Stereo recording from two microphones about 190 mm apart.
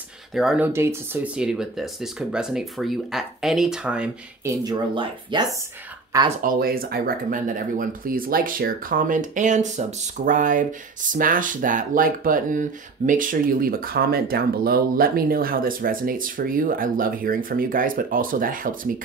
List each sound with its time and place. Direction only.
0.3 s speech: centre (ahead or behind)
0.7 s speech: 10° right (ahead or behind)
4.5 s speech: 20° right (ahead or behind)
6.4 s speech: 50° right (ahead or behind)